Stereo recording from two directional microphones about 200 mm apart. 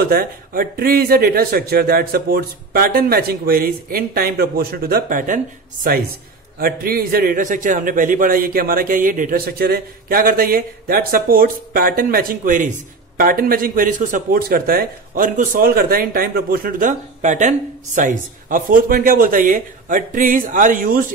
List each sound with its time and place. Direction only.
0.0 s speech: 45° right (ahead or behind)
6.6 s speech: 45° right (ahead or behind)